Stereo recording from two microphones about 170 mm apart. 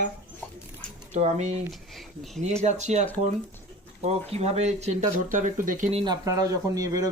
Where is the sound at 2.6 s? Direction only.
45° right (ahead or behind).